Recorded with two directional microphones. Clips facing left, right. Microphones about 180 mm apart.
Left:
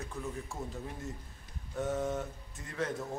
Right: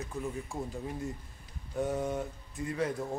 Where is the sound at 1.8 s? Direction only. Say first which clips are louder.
Even; centre (ahead or behind).